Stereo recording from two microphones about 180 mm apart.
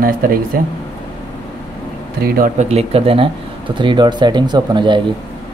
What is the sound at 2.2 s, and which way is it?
Speech, 55° right (ahead or behind).